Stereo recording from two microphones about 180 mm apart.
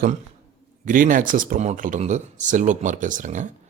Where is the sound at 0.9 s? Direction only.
50° right (ahead or behind).